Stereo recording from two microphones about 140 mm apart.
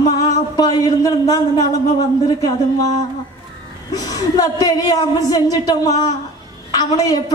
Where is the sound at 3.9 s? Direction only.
25° left (ahead or behind).